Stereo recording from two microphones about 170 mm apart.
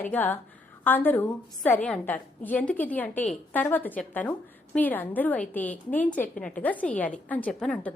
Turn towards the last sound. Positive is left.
turn(degrees=5)  # may be behind; listen again after turning